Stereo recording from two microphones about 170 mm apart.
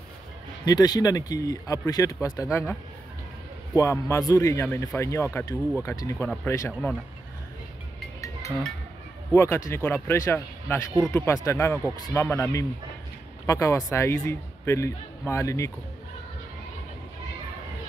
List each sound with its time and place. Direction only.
0.7 s speech: 25° left (ahead or behind)
8.2 s music: 20° left (ahead or behind)
9.3 s speech: 15° left (ahead or behind)